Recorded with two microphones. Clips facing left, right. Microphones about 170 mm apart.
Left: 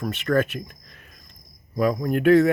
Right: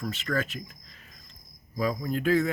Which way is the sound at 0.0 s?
60° left (ahead or behind).